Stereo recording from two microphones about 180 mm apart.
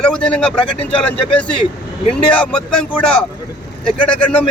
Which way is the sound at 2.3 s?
5° left (ahead or behind).